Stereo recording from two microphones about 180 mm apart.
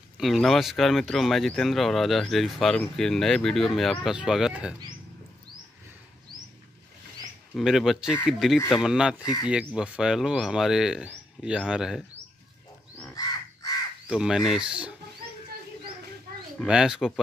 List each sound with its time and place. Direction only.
0.2 s speech: centre (ahead or behind)
7.5 s speech: centre (ahead or behind)
9.2 s speech: 20° left (ahead or behind)
9.7 s speech: 5° right (ahead or behind)
13.1 s crow: 20° left (ahead or behind)
14.0 s speech: 5° right (ahead or behind)
16.5 s speech: 5° right (ahead or behind)